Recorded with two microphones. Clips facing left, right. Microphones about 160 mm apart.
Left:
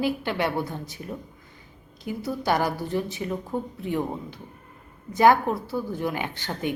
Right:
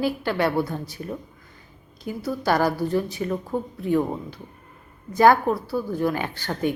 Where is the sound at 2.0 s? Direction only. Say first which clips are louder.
Right 2 dB; 15° left (ahead or behind).